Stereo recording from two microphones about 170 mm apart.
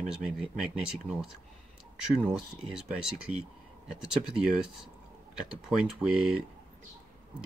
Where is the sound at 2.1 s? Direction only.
5° right (ahead or behind).